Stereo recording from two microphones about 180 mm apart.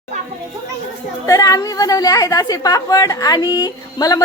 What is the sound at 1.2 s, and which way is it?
A woman's voice, 20° left (ahead or behind).